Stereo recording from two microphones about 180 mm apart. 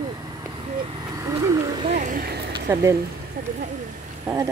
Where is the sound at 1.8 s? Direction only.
40° right (ahead or behind).